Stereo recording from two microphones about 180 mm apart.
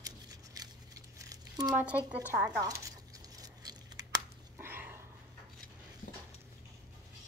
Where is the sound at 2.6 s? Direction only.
20° right (ahead or behind).